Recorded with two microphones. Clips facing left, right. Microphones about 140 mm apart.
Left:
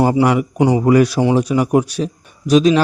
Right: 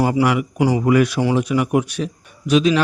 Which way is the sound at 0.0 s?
30° left (ahead or behind).